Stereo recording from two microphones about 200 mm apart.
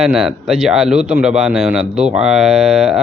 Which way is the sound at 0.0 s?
Centre (ahead or behind).